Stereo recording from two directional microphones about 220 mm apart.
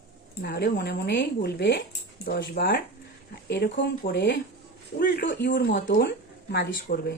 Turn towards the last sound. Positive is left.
turn(degrees=45)  # may be behind; listen again after turning